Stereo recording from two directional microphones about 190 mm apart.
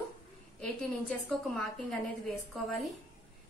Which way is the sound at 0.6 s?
5° left (ahead or behind).